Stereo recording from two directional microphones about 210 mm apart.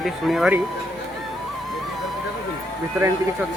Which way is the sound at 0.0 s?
Centre (ahead or behind).